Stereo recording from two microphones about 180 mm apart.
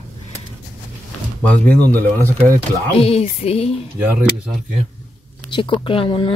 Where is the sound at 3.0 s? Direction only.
35° left (ahead or behind).